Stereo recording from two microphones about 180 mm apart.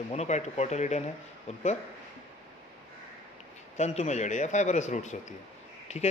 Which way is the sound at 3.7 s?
40° left (ahead or behind).